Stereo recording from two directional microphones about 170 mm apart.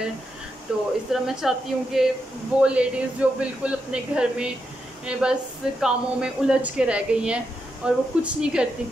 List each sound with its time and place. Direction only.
0.7 s speech: 5° right (ahead or behind)